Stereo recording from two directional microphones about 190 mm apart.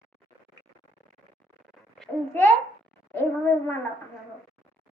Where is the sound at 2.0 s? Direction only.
10° left (ahead or behind).